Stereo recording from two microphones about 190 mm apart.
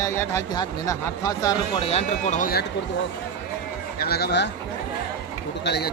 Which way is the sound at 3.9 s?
55° left (ahead or behind).